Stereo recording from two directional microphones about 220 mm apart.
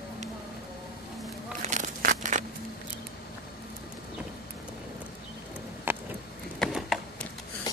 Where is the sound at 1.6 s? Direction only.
35° right (ahead or behind).